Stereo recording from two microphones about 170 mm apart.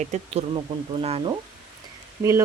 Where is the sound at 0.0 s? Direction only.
40° right (ahead or behind).